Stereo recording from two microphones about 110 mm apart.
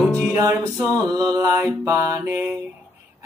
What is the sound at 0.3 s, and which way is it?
Music, 25° right (ahead or behind).